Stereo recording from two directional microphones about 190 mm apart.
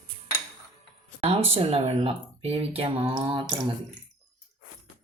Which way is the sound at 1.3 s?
30° right (ahead or behind).